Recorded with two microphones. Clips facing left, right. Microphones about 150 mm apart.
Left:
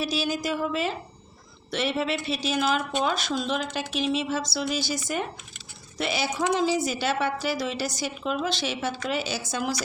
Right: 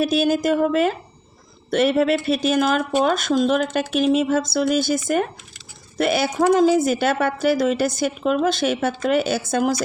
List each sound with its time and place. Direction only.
0.0 s speech: 55° right (ahead or behind)